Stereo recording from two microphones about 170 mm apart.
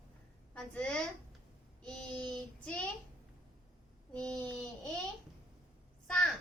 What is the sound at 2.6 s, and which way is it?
Speech, 5° left (ahead or behind).